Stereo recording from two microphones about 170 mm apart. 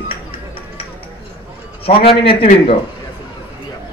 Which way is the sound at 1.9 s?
35° left (ahead or behind).